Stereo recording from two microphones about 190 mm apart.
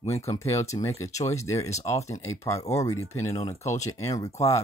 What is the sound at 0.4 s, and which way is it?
Speech, 15° left (ahead or behind).